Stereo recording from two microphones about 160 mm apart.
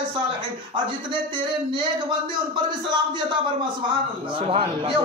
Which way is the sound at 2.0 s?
30° right (ahead or behind).